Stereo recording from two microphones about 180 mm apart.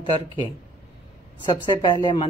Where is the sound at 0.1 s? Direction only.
30° left (ahead or behind).